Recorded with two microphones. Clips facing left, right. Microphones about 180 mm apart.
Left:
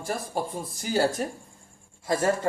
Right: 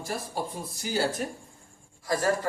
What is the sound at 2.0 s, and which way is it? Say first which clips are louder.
Speech: left 2 dB; 25° left (ahead or behind).